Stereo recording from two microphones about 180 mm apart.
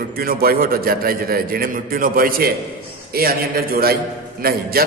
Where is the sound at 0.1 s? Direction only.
55° right (ahead or behind).